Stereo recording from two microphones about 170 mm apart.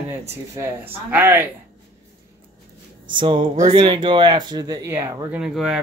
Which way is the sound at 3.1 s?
30° right (ahead or behind).